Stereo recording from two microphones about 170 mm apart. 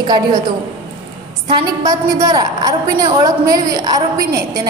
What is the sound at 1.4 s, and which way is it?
A woman's voice, 20° right (ahead or behind).